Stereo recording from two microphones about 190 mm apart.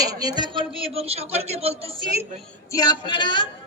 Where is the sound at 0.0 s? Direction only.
20° right (ahead or behind).